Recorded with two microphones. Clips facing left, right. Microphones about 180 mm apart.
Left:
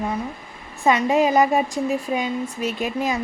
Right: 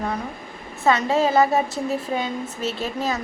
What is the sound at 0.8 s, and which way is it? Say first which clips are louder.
A woman's voice: left 1 dB; 15° left (ahead or behind).